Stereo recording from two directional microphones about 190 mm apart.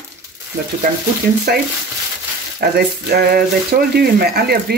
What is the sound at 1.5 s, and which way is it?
Speech, 55° right (ahead or behind).